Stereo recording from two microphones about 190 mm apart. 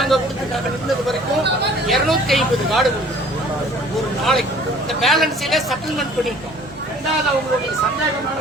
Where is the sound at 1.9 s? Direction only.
Centre (ahead or behind).